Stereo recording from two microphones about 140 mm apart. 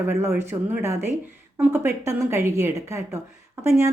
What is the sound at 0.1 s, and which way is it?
A woman's voice, 20° right (ahead or behind).